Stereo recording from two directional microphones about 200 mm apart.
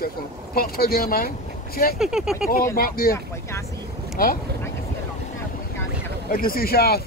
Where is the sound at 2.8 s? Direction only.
50° left (ahead or behind).